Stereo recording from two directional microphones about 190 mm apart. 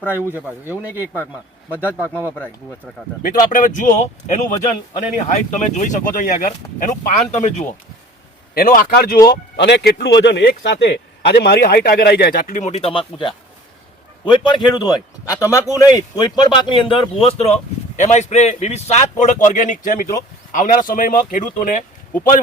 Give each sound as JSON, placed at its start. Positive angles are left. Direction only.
{"t": 0.0, "sound": "speech", "side_deg": 10}
{"t": 0.3, "sound": "a man's voice", "side_deg": -10}
{"t": 0.9, "sound": "speech", "side_deg": 10}
{"t": 3.2, "sound": "a man's voice", "side_deg": 45}
{"t": 8.5, "sound": "a man's voice", "side_deg": 50}
{"t": 9.6, "sound": "a man's voice", "side_deg": 60}